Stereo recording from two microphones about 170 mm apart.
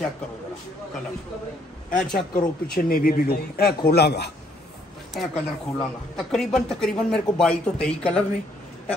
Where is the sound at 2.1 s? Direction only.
60° left (ahead or behind); by 4.3 s 75° left (ahead or behind).